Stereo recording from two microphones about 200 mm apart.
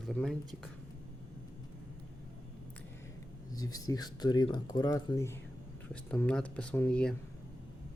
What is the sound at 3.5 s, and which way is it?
Speech, 20° left (ahead or behind).